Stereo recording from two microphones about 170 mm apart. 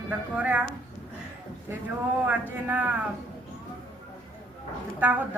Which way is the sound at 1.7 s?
15° right (ahead or behind).